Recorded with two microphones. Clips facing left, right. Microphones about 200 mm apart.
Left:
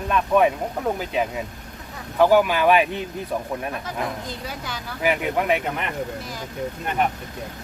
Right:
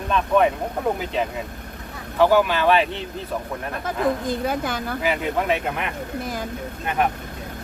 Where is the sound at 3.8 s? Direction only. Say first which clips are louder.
Right 7 dB; 50° right (ahead or behind).